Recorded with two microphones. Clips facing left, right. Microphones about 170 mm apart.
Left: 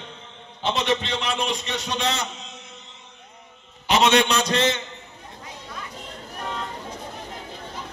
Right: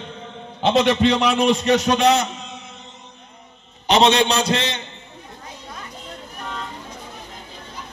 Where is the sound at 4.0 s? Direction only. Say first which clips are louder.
Right 2 dB; 30° right (ahead or behind).